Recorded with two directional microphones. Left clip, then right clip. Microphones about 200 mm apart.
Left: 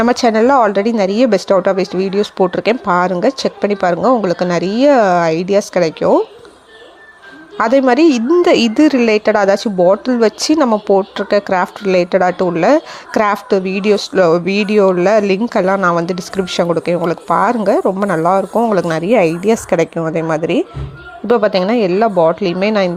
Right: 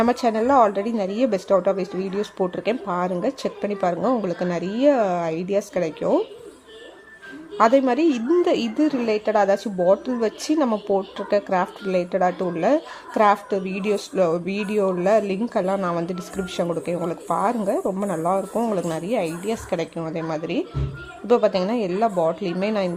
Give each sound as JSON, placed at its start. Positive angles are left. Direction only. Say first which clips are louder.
{"t": 0.0, "sound": "speech", "louder": "left 9 dB", "side_deg": 25}
{"t": 7.6, "sound": "speech", "louder": "left 7 dB", "side_deg": 20}